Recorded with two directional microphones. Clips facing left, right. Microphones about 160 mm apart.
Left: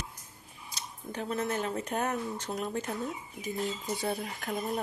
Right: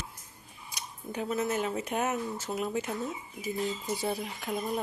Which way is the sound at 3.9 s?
Centre (ahead or behind).